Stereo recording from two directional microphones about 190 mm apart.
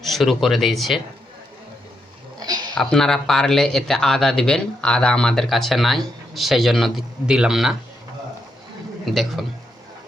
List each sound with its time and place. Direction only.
0.0 s speech: centre (ahead or behind)
2.4 s a sound: 20° right (ahead or behind)
2.7 s speech: centre (ahead or behind)
9.0 s speech: centre (ahead or behind)